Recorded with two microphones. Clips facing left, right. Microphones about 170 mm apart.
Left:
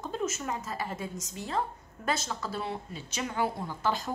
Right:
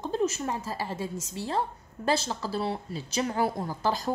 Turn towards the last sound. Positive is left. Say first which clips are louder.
# right 2 dB
turn(degrees=-35)  # may be behind; listen again after turning